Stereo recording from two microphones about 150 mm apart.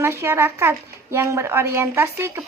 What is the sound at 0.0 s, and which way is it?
A woman's voice, 15° right (ahead or behind).